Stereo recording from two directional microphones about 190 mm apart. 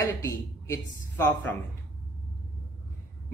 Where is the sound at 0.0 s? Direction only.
15° left (ahead or behind).